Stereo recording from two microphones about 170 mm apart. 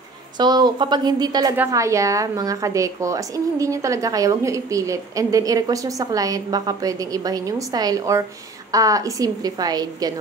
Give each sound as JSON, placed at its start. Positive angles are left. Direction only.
{"t": 0.4, "sound": "a woman's voice", "side_deg": -25}